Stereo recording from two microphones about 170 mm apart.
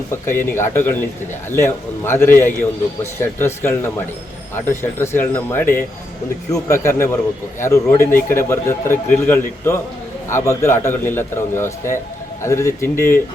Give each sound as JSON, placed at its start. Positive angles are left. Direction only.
{"t": 0.1, "sound": "speech", "side_deg": 15}